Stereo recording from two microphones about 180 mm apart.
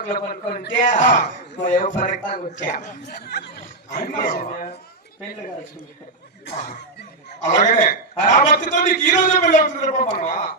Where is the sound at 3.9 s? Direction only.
45° left (ahead or behind).